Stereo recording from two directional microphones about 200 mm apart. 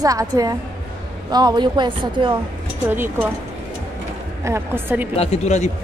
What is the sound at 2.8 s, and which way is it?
Speech, 10° right (ahead or behind).